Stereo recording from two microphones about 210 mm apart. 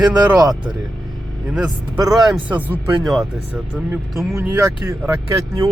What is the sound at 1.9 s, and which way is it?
Speech, 20° right (ahead or behind).